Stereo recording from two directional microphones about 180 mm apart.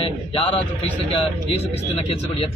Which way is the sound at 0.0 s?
30° left (ahead or behind).